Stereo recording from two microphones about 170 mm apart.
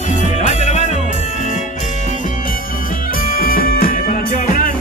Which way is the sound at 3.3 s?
60° left (ahead or behind).